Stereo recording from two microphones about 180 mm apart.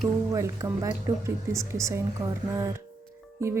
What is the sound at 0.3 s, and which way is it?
A woman's voice, 15° right (ahead or behind).